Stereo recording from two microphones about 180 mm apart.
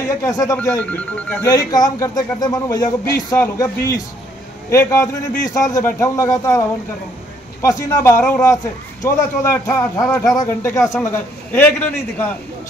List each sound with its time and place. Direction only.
0.0 s a man's voice: 15° left (ahead or behind)
1.5 s a man's voice: 20° left (ahead or behind)
7.6 s a man's voice: 15° left (ahead or behind)